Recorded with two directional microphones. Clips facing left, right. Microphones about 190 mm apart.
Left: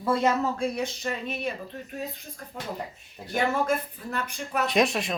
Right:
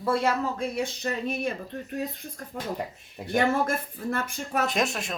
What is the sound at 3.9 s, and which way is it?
Speech, 45° right (ahead or behind).